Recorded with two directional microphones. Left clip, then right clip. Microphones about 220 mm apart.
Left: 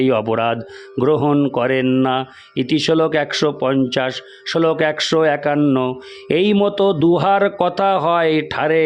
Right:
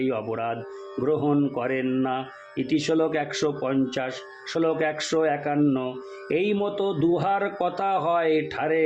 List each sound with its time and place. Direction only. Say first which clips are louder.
0.0 s speech: left 10 dB; 50° left (ahead or behind)